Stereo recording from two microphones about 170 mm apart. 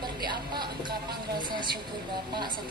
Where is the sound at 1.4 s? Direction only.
25° right (ahead or behind).